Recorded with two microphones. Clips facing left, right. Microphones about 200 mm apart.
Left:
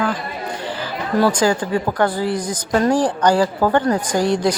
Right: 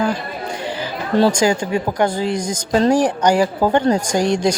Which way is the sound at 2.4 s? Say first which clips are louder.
Right 1 dB; 45° right (ahead or behind).